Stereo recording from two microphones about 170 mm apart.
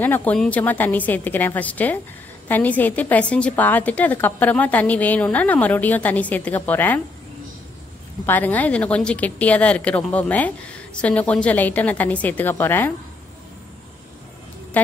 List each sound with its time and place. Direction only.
0.0 s speech: 10° left (ahead or behind)
8.3 s speech: 10° left (ahead or behind)